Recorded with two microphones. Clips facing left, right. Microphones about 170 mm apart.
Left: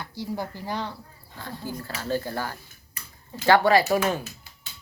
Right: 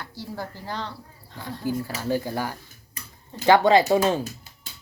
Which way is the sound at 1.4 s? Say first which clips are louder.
Right 6 dB; 15° right (ahead or behind).